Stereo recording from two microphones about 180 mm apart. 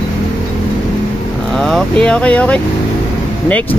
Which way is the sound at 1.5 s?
Centre (ahead or behind).